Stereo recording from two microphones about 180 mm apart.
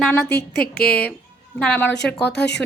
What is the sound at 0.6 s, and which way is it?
Speech, 55° left (ahead or behind).